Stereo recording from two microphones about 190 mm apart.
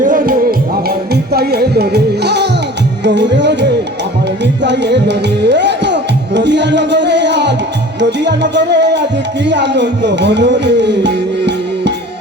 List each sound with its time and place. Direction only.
0.0 s music: 45° right (ahead or behind)
0.9 s music: 55° right (ahead or behind)